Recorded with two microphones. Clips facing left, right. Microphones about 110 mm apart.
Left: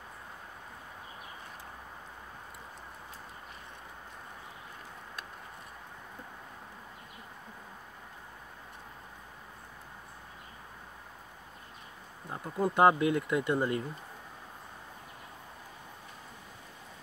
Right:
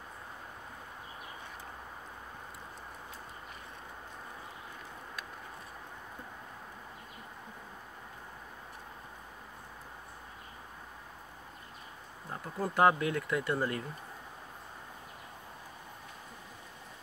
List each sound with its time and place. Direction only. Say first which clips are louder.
12.3 s speech: left 5 dB; 20° left (ahead or behind)